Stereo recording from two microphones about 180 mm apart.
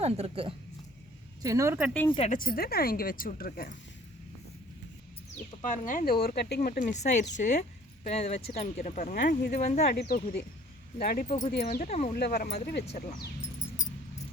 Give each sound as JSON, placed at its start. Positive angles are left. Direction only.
{"t": 0.0, "sound": "speech", "side_deg": -35}
{"t": 1.4, "sound": "speech", "side_deg": -15}
{"t": 1.9, "sound": "speech", "side_deg": 10}
{"t": 2.1, "sound": "speech", "side_deg": 35}
{"t": 2.4, "sound": "a woman's voice", "side_deg": 55}
{"t": 5.6, "sound": "a woman's voice", "side_deg": 45}
{"t": 9.8, "sound": "speech", "side_deg": 60}
{"t": 11.7, "sound": "speech", "side_deg": 45}
{"t": 12.1, "sound": "speech", "side_deg": 60}
{"t": 12.8, "sound": "speech", "side_deg": 35}